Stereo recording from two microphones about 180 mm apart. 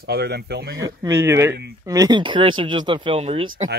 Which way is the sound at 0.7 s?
20° right (ahead or behind).